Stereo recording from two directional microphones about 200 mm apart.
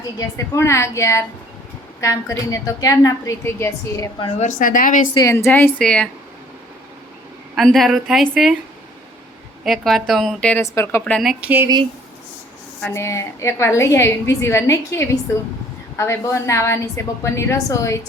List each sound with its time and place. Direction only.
0.3 s a woman's voice: 15° left (ahead or behind)
4.4 s a woman's voice: 40° left (ahead or behind)
5.1 s a woman's voice: 15° left (ahead or behind)
7.5 s speech: centre (ahead or behind)
9.6 s speech: centre (ahead or behind)
12.8 s a woman's voice: 15° left (ahead or behind)